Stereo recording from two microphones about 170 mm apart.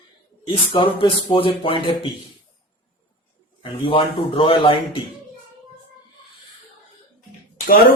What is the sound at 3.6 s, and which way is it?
Speech, 30° left (ahead or behind).